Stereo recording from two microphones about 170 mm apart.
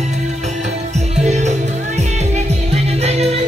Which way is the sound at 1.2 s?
45° right (ahead or behind).